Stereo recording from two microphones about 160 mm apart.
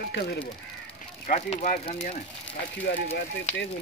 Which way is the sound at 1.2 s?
50° left (ahead or behind).